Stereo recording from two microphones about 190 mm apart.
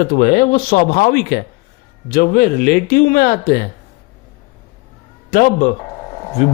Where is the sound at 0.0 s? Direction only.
50° left (ahead or behind).